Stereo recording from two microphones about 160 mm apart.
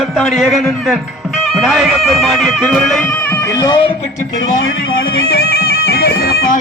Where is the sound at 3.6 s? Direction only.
30° left (ahead or behind).